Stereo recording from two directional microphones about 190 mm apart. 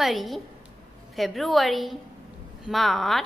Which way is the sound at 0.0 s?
Centre (ahead or behind).